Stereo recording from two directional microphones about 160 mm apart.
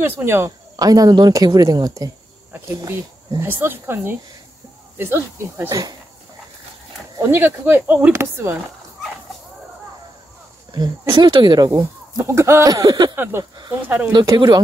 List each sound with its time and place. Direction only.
0.0 s speech: 15° right (ahead or behind)
7.2 s speech: 15° right (ahead or behind)
10.7 s speech: 30° right (ahead or behind)
13.1 s speech: 15° right (ahead or behind)
14.1 s speech: 25° right (ahead or behind)